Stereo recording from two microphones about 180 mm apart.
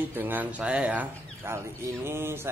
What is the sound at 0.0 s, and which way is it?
Speech, 10° right (ahead or behind).